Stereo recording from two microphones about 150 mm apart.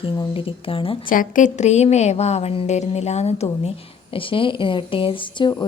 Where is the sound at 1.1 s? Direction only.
60° left (ahead or behind).